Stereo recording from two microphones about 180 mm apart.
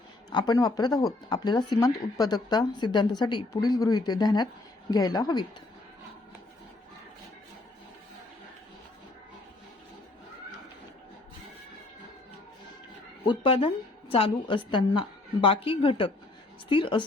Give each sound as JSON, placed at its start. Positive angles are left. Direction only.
{"t": 0.3, "sound": "speech", "side_deg": 25}
{"t": 13.2, "sound": "speech", "side_deg": 30}